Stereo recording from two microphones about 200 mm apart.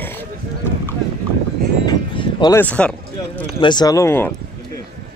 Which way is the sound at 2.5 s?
10° left (ahead or behind).